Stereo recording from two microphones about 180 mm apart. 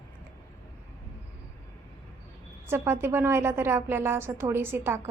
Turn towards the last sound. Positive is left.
turn(degrees=-15)  # may be behind; listen again after turning